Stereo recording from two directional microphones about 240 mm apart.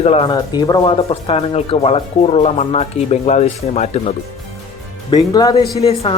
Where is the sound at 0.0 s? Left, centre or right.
Left.